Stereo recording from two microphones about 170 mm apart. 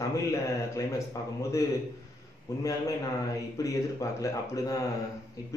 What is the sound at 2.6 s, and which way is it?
A man's voice, 20° left (ahead or behind).